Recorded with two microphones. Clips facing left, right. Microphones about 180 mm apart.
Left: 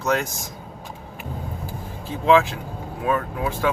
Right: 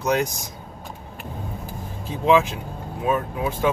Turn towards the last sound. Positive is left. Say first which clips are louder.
# right 1 dB
turn(degrees=-20)  # may be behind; listen again after turning